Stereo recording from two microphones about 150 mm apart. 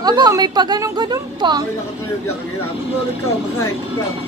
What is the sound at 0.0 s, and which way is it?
Speech, 30° right (ahead or behind).